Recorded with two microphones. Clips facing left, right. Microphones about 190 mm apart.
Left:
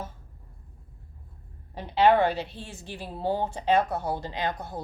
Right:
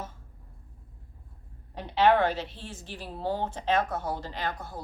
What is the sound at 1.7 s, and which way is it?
A woman's voice, 10° left (ahead or behind).